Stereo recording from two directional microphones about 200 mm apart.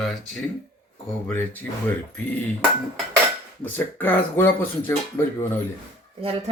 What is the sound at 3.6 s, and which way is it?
Speech, 10° left (ahead or behind).